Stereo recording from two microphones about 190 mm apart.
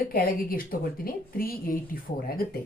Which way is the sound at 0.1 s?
50° left (ahead or behind).